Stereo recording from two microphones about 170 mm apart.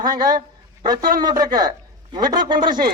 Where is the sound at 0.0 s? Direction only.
25° right (ahead or behind).